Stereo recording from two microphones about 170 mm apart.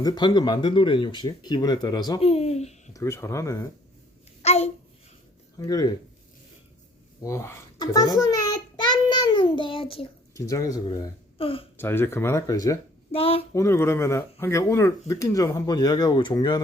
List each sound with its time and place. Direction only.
0.0 s speech: 25° left (ahead or behind)
2.9 s speech: 15° left (ahead or behind)
4.4 s a sound: 40° left (ahead or behind)
5.5 s speech: 25° left (ahead or behind)
7.3 s child singing: 15° left (ahead or behind); by 10.1 s 30° left (ahead or behind)
10.3 s speech: 20° left (ahead or behind)
11.8 s speech: 15° left (ahead or behind)
13.1 s a sound: 35° left (ahead or behind)
13.5 s speech: 15° left (ahead or behind)